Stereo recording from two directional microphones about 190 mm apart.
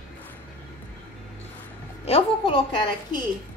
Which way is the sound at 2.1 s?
30° left (ahead or behind).